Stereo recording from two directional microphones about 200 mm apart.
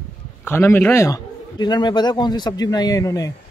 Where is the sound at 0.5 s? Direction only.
10° left (ahead or behind).